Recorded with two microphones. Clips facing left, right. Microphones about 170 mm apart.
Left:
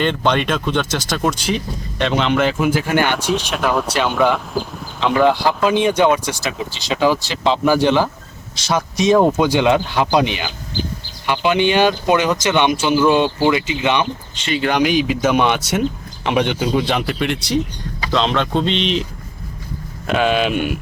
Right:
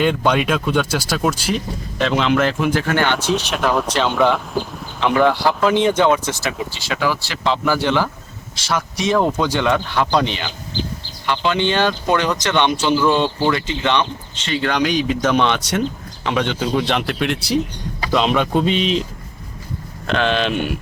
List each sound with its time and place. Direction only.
0.0 s speech: 5° right (ahead or behind)
5.2 s speech: 15° left (ahead or behind); by 19.0 s 5° right (ahead or behind)
20.1 s speech: 10° left (ahead or behind)